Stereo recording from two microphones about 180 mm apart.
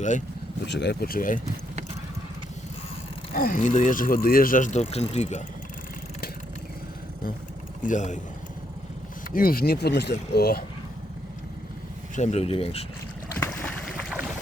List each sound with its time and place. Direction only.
0.7 s speech: 70° left (ahead or behind); by 1.4 s 50° left (ahead or behind)
3.3 s speech: 50° left (ahead or behind)
7.8 s speech: 45° left (ahead or behind)
9.3 s speech: 55° left (ahead or behind)
12.1 s speech: 40° left (ahead or behind)
13.4 s boat: 5° left (ahead or behind)